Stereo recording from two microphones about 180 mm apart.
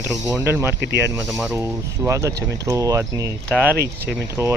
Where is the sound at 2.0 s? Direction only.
15° right (ahead or behind).